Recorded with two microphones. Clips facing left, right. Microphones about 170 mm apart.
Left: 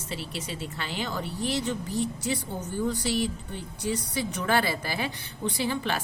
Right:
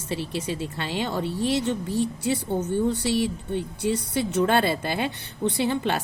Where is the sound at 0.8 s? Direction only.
30° right (ahead or behind).